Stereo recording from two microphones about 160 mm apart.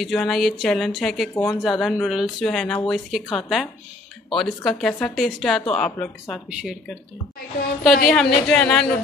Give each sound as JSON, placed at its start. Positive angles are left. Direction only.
{"t": 0.0, "sound": "speech", "side_deg": 0}
{"t": 1.3, "sound": "speech", "side_deg": 15}
{"t": 1.6, "sound": "speech", "side_deg": 0}
{"t": 7.8, "sound": "a woman's voice", "side_deg": 60}
{"t": 8.1, "sound": "speech", "side_deg": 5}